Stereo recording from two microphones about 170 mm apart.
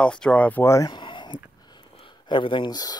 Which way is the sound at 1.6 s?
25° left (ahead or behind).